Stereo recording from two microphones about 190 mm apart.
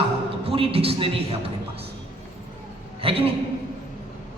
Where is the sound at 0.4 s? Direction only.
30° right (ahead or behind).